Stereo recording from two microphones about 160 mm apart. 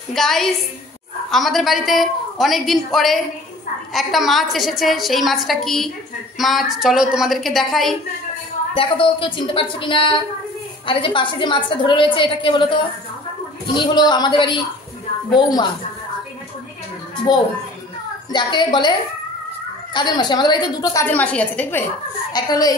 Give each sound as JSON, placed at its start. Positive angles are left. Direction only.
{"t": 0.1, "sound": "a woman's voice", "side_deg": 0}
{"t": 8.7, "sound": "a woman's voice", "side_deg": 35}
{"t": 13.7, "sound": "a woman's voice", "side_deg": 30}
{"t": 18.3, "sound": "a woman's voice", "side_deg": 30}
{"t": 21.1, "sound": "a woman's voice", "side_deg": 10}
{"t": 22.3, "sound": "a woman's voice", "side_deg": 25}